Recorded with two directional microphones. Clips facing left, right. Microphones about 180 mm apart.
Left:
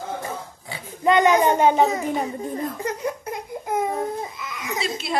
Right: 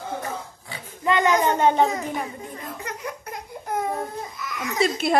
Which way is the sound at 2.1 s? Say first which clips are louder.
Left 6 dB; 30° left (ahead or behind).